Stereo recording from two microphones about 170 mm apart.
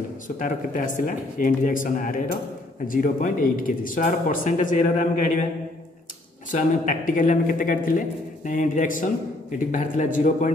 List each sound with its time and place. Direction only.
0.4 s speech: 50° left (ahead or behind)
6.5 s speech: 50° left (ahead or behind)